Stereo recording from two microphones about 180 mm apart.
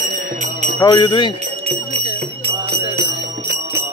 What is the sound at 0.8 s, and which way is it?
Speech, 25° left (ahead or behind).